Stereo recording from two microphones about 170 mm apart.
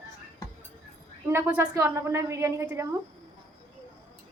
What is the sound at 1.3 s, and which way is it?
A man's voice, 15° right (ahead or behind).